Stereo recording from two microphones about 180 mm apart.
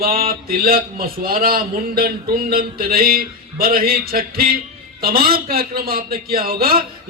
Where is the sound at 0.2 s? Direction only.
55° right (ahead or behind).